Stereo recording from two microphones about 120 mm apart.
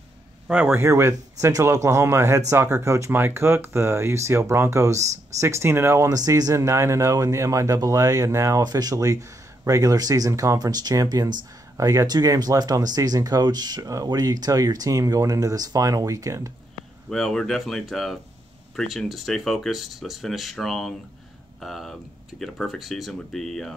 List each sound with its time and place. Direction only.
0.5 s speech: 15° right (ahead or behind)
17.1 s speech: 5° left (ahead or behind)